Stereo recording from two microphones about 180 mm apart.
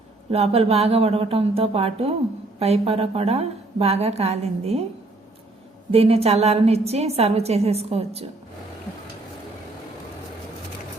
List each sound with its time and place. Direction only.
0.3 s a woman's voice: 35° right (ahead or behind)
5.9 s a woman's voice: 35° right (ahead or behind)